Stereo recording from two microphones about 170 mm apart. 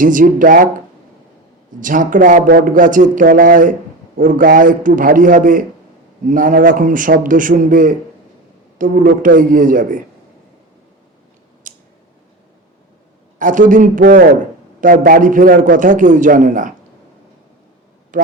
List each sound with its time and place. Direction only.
0.0 s speech: 50° right (ahead or behind)
1.8 s speech: 50° right (ahead or behind)
11.6 s scissors: 50° right (ahead or behind)
13.4 s speech: 50° right (ahead or behind)
18.1 s a sound: 50° right (ahead or behind)